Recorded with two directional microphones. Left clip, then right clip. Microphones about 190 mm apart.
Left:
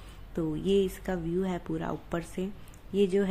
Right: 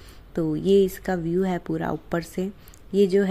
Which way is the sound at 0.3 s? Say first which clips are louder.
Right 8 dB; 25° right (ahead or behind).